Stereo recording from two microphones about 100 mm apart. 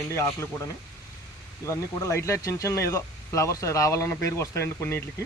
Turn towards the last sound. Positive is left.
turn(degrees=25)  # may be behind; listen again after turning